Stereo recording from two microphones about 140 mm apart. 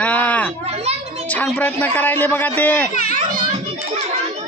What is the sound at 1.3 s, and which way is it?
Speech, 10° left (ahead or behind).